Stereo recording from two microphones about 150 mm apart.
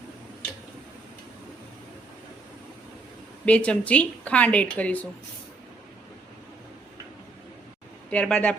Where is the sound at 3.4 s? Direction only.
10° left (ahead or behind).